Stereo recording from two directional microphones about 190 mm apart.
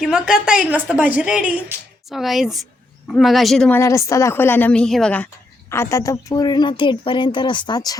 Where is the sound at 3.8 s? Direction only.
15° left (ahead or behind).